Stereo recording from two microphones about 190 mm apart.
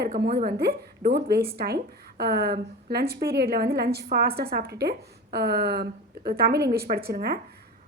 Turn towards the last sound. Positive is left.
turn(degrees=-55)  # may be behind; listen again after turning